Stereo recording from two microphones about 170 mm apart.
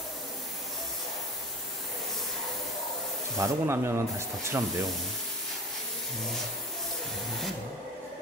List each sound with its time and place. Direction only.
3.3 s speech: 15° right (ahead or behind)